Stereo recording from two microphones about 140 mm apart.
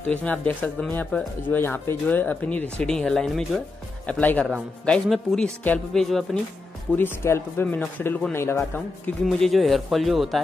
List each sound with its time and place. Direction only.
0.1 s speech: 10° left (ahead or behind)
7.0 s speech: 15° left (ahead or behind)
9.2 s speech: centre (ahead or behind)